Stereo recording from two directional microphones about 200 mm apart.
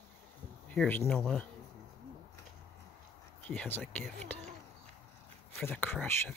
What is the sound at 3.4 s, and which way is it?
Speech, 10° left (ahead or behind).